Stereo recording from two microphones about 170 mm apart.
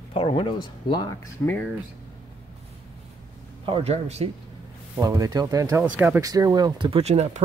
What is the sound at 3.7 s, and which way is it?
Speech, 35° right (ahead or behind).